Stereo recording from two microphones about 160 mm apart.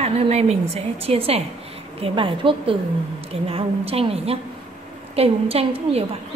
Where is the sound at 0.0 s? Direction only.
40° right (ahead or behind).